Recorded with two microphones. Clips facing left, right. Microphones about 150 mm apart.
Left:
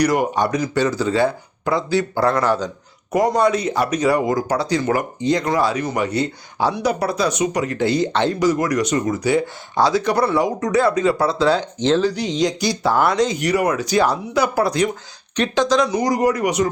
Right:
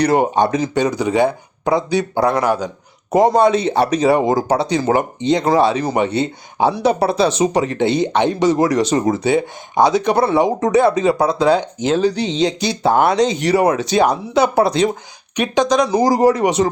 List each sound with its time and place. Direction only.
0.0 s speech: 25° right (ahead or behind)
3.1 s speech: 25° right (ahead or behind); by 12.1 s 10° right (ahead or behind)
12.1 s speech: 25° right (ahead or behind)
15.9 s speech: 30° right (ahead or behind)